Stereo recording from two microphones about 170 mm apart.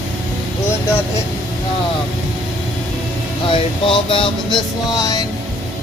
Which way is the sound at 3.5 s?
30° left (ahead or behind).